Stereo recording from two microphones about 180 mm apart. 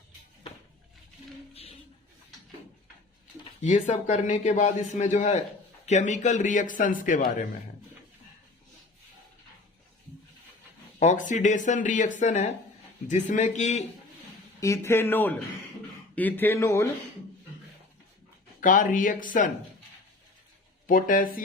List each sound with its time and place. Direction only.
3.6 s a man's voice: 40° left (ahead or behind)
11.0 s a man's voice: 45° left (ahead or behind)
14.6 s speech: 15° left (ahead or behind)
18.6 s speech: 50° left (ahead or behind)
20.8 s speech: 50° left (ahead or behind)